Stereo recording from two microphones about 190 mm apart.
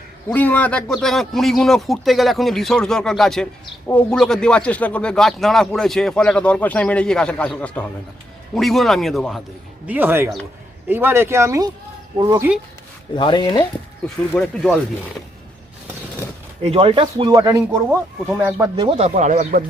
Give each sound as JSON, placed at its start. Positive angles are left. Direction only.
{"t": 0.3, "sound": "speech", "side_deg": 10}
{"t": 13.1, "sound": "speech", "side_deg": 25}
{"t": 14.3, "sound": "speech", "side_deg": 0}
{"t": 16.6, "sound": "speech", "side_deg": -30}
{"t": 17.8, "sound": "speech", "side_deg": -5}
{"t": 18.8, "sound": "speech", "side_deg": -30}